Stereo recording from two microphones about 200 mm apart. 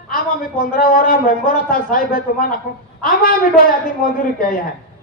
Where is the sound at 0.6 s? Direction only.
50° left (ahead or behind).